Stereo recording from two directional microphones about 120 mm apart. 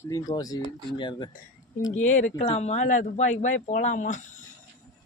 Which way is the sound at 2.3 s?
65° left (ahead or behind).